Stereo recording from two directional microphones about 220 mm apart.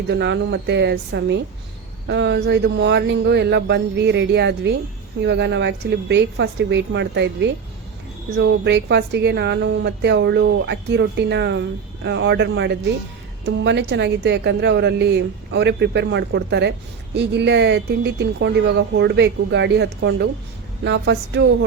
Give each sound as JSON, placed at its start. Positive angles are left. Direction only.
{"t": 0.1, "sound": "a woman's voice", "side_deg": -50}